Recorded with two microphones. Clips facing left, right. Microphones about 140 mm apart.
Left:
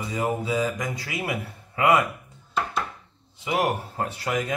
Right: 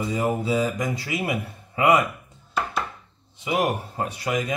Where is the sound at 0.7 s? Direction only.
25° right (ahead or behind).